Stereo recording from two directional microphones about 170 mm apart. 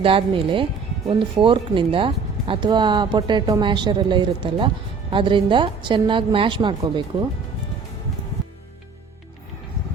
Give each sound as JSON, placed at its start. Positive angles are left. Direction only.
{"t": 0.0, "sound": "speech", "side_deg": -30}